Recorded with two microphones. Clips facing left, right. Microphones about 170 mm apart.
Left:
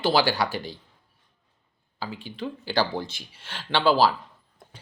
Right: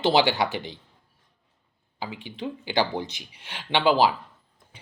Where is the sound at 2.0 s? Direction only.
15° right (ahead or behind).